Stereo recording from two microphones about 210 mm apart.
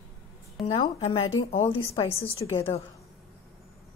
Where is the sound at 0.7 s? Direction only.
25° left (ahead or behind).